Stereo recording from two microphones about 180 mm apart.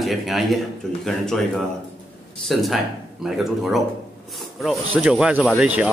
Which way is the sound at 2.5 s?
Centre (ahead or behind).